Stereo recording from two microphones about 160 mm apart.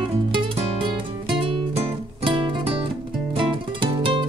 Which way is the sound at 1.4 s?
30° right (ahead or behind).